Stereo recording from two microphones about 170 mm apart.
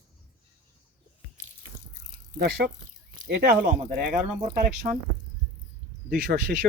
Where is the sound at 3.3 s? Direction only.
85° right.